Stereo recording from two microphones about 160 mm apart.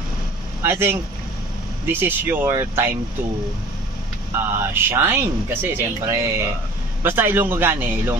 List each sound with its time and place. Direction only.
0.6 s speech: 15° right (ahead or behind)
4.6 s speech: 15° right (ahead or behind)